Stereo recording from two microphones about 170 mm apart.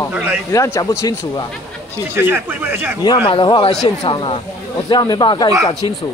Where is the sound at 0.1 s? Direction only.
10° right (ahead or behind).